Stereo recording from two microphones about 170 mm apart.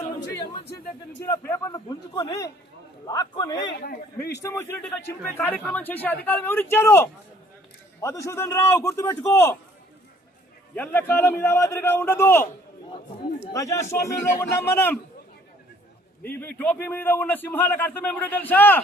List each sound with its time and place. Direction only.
1.2 s a man's voice: 15° left (ahead or behind)
3.6 s speech: 90° left
4.4 s a man's voice: 15° left (ahead or behind)
10.8 s a man's voice: 10° left (ahead or behind)
13.5 s a man's voice: 20° left (ahead or behind)
16.2 s a man's voice: 10° left (ahead or behind)